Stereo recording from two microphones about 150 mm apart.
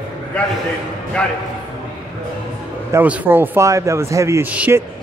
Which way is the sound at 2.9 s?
10° right (ahead or behind).